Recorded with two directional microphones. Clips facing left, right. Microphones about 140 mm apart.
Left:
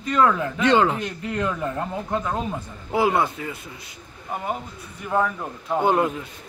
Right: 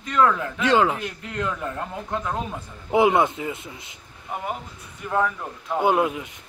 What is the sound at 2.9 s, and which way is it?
A man's voice, 20° right (ahead or behind).